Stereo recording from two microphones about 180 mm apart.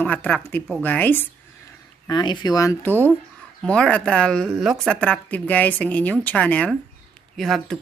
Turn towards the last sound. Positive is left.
turn(degrees=0)  # may be behind; listen again after turning